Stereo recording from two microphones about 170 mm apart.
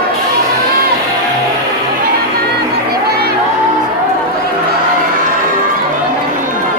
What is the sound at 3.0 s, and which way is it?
Music, 70° right (ahead or behind).